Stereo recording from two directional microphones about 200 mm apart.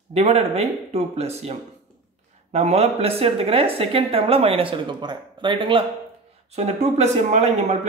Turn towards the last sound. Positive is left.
turn(degrees=-35)  # may be behind; listen again after turning